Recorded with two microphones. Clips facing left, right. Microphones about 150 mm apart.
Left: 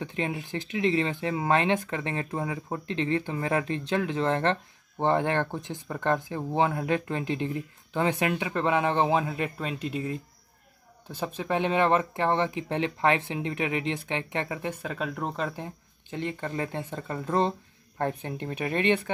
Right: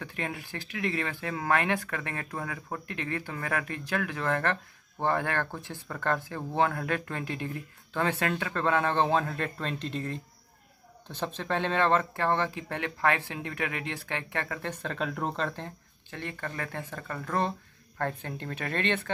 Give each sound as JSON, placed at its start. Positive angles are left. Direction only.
{"t": 0.0, "sound": "speech", "side_deg": 20}